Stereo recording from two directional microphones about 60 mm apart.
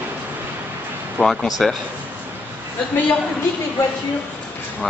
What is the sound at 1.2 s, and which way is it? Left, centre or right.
Speech, centre.